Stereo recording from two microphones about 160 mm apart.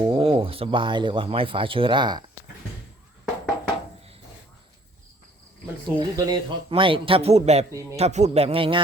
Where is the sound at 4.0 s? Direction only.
40° right (ahead or behind).